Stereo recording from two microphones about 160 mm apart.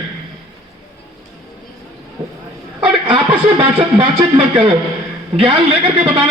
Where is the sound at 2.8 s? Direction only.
30° right (ahead or behind).